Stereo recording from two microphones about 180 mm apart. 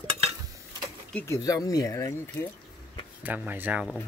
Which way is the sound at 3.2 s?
10° right (ahead or behind).